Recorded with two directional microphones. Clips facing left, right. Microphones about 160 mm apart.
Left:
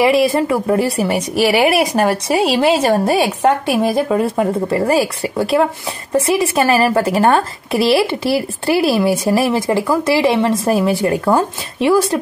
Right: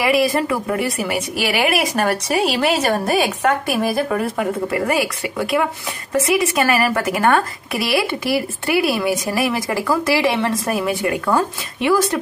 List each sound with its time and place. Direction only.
0.0 s a woman's voice: 25° left (ahead or behind)